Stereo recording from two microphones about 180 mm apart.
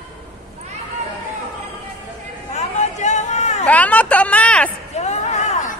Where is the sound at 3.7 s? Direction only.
10° left (ahead or behind).